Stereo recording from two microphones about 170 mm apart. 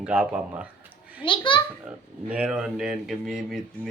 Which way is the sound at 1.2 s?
30° left (ahead or behind).